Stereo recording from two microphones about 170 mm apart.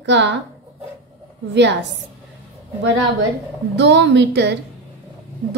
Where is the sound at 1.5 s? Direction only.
90° right.